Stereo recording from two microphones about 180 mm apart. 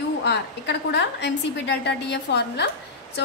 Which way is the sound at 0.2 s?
70° left (ahead or behind).